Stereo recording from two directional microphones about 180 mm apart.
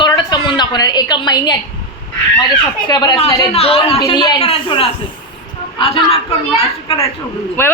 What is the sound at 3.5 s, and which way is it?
Speech, 35° left (ahead or behind).